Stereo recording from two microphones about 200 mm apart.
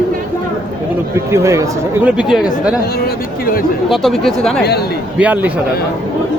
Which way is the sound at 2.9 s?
50° left (ahead or behind).